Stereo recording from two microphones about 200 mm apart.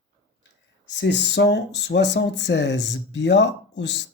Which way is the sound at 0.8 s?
60° left (ahead or behind).